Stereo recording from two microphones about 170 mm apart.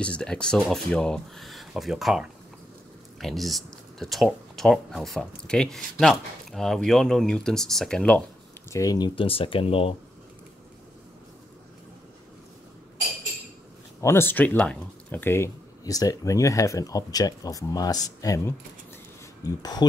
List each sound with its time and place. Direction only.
0.0 s speech: 5° left (ahead or behind)
8.6 s speech: 20° left (ahead or behind)
14.0 s speech: 15° left (ahead or behind)